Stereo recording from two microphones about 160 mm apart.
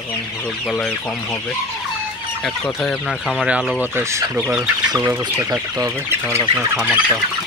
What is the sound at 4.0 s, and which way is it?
Speech, 15° right (ahead or behind).